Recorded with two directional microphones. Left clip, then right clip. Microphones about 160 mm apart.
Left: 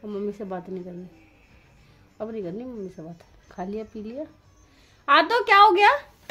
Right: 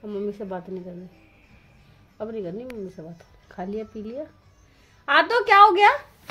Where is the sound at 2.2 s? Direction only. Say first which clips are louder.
Right 1 dB; 10° left (ahead or behind).